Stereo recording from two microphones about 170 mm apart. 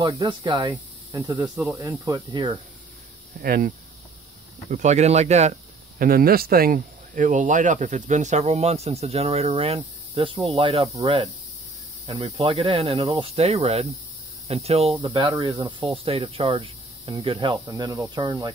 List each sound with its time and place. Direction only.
0.0 s speech: 25° right (ahead or behind)
1.4 s speech: 5° right (ahead or behind)
1.8 s speech: 20° right (ahead or behind)
3.4 s speech: 60° right (ahead or behind)
4.6 s speech: 45° right (ahead or behind)
5.9 s speech: 60° right (ahead or behind); by 15.0 s 35° right (ahead or behind)
15.0 s speech: 25° right (ahead or behind)